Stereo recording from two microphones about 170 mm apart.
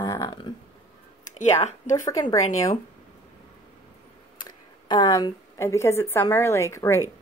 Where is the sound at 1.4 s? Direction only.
45° left (ahead or behind).